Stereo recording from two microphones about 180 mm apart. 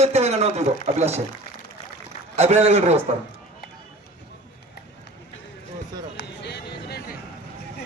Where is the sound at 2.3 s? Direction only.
35° right (ahead or behind).